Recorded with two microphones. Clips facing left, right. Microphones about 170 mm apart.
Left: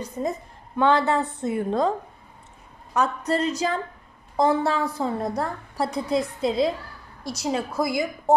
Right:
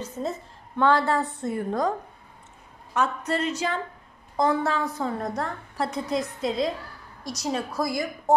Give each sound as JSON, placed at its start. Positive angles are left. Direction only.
{"t": 0.0, "sound": "a woman's voice", "side_deg": 15}
{"t": 2.9, "sound": "a woman's voice", "side_deg": 35}